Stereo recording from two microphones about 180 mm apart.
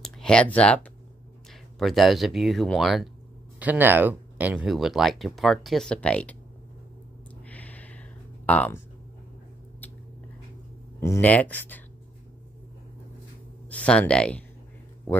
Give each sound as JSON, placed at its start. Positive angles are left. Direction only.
{"t": 0.0, "sound": "speech", "side_deg": 5}
{"t": 7.4, "sound": "a sound", "side_deg": 10}
{"t": 11.0, "sound": "speech", "side_deg": 15}
{"t": 13.7, "sound": "speech", "side_deg": 5}